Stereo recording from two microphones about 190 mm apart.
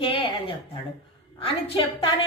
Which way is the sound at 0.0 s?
30° left (ahead or behind).